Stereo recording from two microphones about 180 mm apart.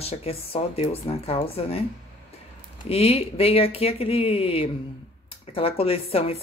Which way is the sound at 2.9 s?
35° left (ahead or behind).